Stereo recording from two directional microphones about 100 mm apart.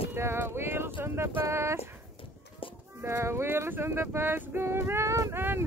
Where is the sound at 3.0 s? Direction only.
25° right (ahead or behind).